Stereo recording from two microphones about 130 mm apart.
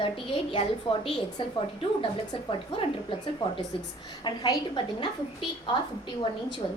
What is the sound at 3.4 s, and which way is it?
A woman's voice, 40° left (ahead or behind).